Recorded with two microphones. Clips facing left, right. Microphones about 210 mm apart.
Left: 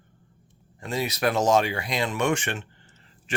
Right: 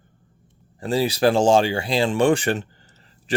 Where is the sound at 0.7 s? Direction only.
30° right (ahead or behind).